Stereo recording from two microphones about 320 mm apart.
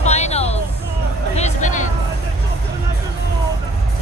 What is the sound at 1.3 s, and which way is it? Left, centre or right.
Music, left.